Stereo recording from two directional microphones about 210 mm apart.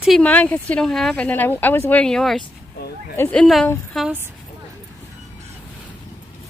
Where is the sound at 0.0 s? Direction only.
5° left (ahead or behind).